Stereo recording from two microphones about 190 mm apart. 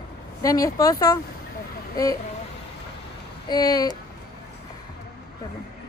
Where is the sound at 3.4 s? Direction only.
20° left (ahead or behind).